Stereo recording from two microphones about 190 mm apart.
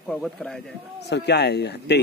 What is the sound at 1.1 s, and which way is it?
Speech, 60° left (ahead or behind).